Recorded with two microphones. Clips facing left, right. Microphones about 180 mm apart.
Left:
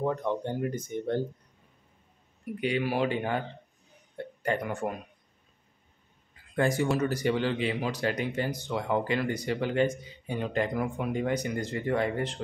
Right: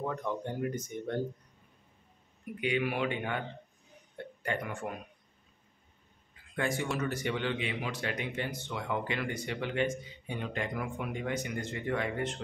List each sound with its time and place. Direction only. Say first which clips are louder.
0.0 s speech: left 5 dB; 30° left (ahead or behind)
2.6 s speech: left 3 dB; 35° left (ahead or behind)
6.5 s speech: left 6 dB; 40° left (ahead or behind)